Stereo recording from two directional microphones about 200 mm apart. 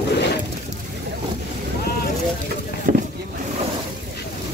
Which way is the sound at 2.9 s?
45° right (ahead or behind).